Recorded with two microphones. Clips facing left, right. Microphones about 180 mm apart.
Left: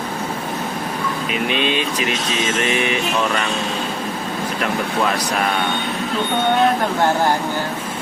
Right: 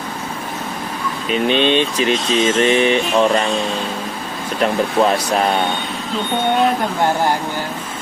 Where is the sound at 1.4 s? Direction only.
30° right (ahead or behind).